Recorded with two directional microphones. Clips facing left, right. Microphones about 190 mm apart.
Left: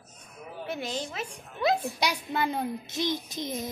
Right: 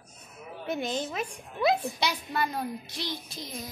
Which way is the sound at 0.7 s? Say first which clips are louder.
Right 3 dB; 20° right (ahead or behind).